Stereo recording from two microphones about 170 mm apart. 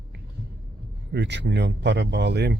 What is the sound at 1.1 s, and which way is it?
Speech, 90° right.